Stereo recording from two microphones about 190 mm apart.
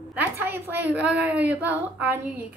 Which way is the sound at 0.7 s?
10° right (ahead or behind).